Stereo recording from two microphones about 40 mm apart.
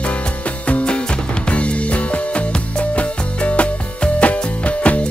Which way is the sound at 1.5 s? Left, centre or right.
Left.